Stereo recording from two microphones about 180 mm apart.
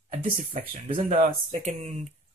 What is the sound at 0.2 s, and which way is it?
Speech, 45° right (ahead or behind).